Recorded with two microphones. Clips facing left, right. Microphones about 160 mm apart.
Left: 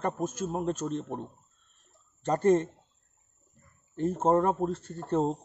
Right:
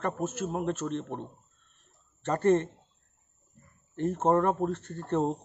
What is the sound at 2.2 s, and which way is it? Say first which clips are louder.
Speech: left 1 dB; 10° left (ahead or behind).